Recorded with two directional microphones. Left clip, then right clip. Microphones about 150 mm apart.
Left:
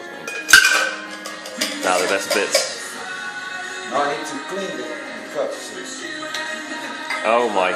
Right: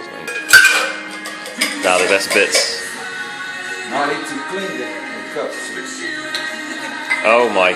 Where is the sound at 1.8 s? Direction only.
5° left (ahead or behind).